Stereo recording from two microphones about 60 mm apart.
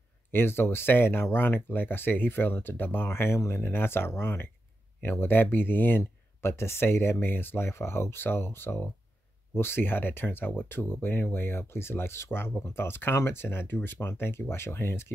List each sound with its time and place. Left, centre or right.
0.3 s speech: left